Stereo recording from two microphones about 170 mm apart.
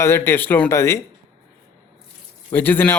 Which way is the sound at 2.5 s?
10° left (ahead or behind).